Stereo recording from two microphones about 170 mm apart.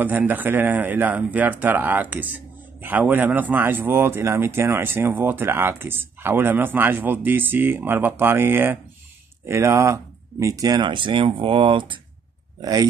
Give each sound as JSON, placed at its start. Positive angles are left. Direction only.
{"t": 0.0, "sound": "speech", "side_deg": -10}